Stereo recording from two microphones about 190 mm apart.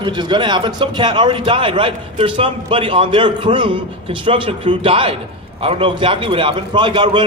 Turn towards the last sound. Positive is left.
turn(degrees=-25)  # may be behind; listen again after turning